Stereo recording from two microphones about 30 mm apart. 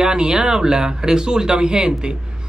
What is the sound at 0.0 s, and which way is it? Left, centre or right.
Speech, right.